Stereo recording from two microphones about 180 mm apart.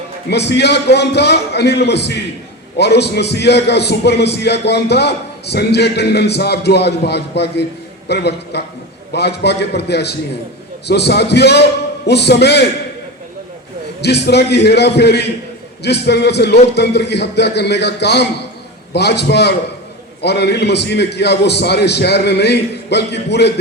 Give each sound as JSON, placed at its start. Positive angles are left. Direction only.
{"t": 0.3, "sound": "a man's voice", "side_deg": 70}
{"t": 14.0, "sound": "a man's voice", "side_deg": 65}